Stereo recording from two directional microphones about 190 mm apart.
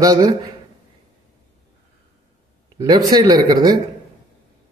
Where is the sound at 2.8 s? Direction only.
20° right (ahead or behind).